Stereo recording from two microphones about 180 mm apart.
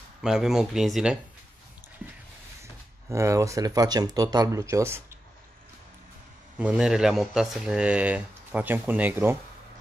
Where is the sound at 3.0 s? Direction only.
15° right (ahead or behind).